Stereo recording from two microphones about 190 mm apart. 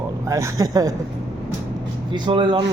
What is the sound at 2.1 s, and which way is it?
Speech, 25° right (ahead or behind).